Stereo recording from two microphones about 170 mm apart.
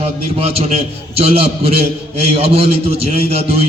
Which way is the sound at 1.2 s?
35° right (ahead or behind).